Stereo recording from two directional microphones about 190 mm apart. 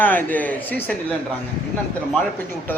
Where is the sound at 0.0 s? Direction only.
10° left (ahead or behind).